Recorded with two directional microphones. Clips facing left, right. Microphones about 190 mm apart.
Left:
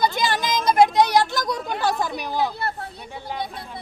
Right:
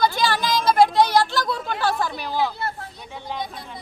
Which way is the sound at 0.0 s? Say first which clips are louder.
Right 1 dB; 20° left (ahead or behind).